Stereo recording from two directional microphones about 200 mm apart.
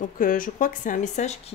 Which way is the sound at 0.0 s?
45° left (ahead or behind).